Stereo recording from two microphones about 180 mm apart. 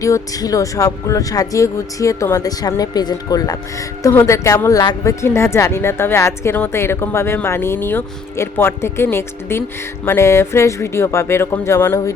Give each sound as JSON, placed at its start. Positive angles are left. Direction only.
{"t": 0.0, "sound": "speech", "side_deg": 20}